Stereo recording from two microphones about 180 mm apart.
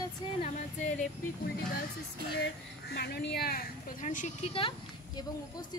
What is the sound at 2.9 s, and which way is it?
Speech, 65° left (ahead or behind).